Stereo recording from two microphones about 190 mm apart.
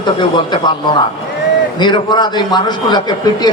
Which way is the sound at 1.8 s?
25° left (ahead or behind).